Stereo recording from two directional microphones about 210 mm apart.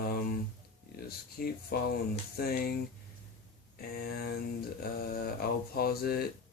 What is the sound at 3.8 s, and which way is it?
Speech, 45° left (ahead or behind).